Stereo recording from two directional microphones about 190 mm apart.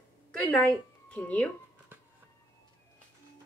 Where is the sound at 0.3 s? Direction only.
5° left (ahead or behind).